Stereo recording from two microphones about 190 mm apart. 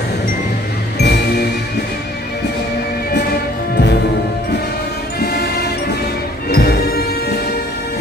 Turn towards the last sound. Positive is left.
turn(degrees=55)  # may be behind; listen again after turning